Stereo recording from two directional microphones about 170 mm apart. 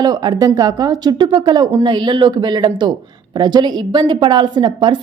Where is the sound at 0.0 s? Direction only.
25° right (ahead or behind).